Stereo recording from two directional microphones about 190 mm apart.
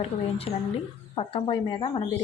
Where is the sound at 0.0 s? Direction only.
30° left (ahead or behind).